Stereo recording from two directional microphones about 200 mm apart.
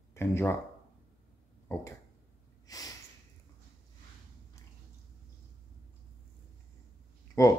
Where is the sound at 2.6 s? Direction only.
15° left (ahead or behind).